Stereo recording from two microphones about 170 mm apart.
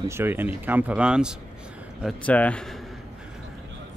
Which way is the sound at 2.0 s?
10° left (ahead or behind).